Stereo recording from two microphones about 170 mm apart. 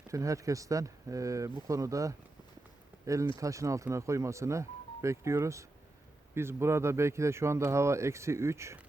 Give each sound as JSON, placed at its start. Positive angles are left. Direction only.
{"t": 0.1, "sound": "speech", "side_deg": -20}
{"t": 3.3, "sound": "speech", "side_deg": -20}